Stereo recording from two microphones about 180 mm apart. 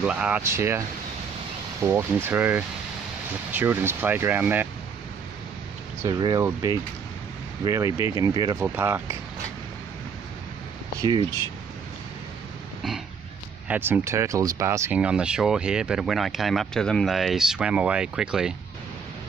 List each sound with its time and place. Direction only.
0.0 s speech: 5° right (ahead or behind)
6.0 s speech: 20° right (ahead or behind)
8.5 s speech: 10° right (ahead or behind)
11.0 s speech: 25° right (ahead or behind)
13.7 s speech: 10° right (ahead or behind)